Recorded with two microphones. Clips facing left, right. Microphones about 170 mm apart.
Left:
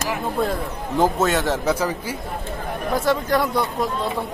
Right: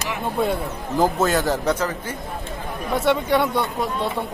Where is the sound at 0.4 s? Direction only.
Centre (ahead or behind).